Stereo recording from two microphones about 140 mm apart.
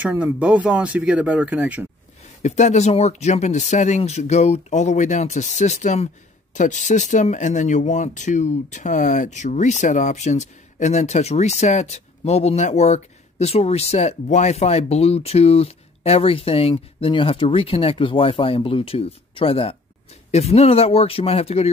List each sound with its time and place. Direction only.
0.1 s speech: 10° right (ahead or behind)
2.4 s speech: 55° left (ahead or behind)